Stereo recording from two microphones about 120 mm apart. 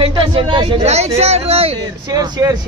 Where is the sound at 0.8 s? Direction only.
60° right (ahead or behind).